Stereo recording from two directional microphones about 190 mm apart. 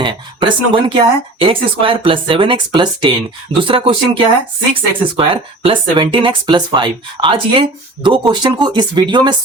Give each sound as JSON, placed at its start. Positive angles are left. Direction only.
{"t": 0.0, "sound": "speech", "side_deg": -25}